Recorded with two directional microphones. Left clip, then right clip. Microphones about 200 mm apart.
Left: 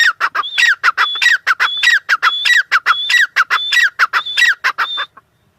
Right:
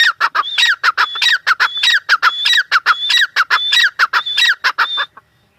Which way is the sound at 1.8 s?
15° left (ahead or behind).